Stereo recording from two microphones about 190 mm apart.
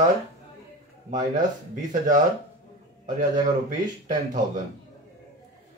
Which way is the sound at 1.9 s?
45° right (ahead or behind).